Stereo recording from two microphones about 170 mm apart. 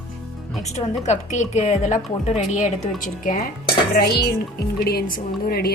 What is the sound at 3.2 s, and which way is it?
Dishes, 55° left (ahead or behind).